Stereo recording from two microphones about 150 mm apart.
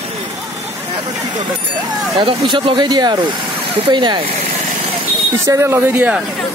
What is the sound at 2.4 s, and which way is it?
Speech, 30° right (ahead or behind).